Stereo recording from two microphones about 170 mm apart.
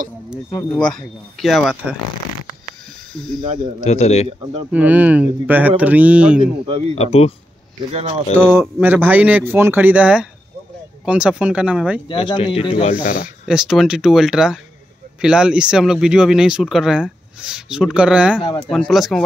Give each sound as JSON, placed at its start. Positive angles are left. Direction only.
{"t": 0.5, "sound": "speech", "side_deg": 15}
{"t": 0.7, "sound": "speech", "side_deg": 5}
{"t": 3.1, "sound": "speech", "side_deg": 0}
{"t": 3.8, "sound": "a man's voice", "side_deg": 40}
{"t": 4.6, "sound": "speech", "side_deg": -10}
{"t": 6.4, "sound": "speech", "side_deg": -35}
{"t": 7.0, "sound": "a man's voice", "side_deg": 40}
{"t": 7.9, "sound": "speech", "side_deg": -40}
{"t": 8.4, "sound": "speech", "side_deg": -15}
{"t": 12.1, "sound": "speech", "side_deg": 30}
{"t": 13.2, "sound": "speech", "side_deg": -5}